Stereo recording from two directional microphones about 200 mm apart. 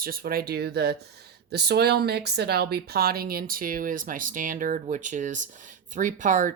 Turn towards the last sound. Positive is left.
turn(degrees=-40)  # may be behind; listen again after turning